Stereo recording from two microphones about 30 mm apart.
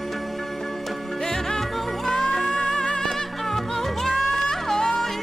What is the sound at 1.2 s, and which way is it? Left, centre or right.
Music, centre.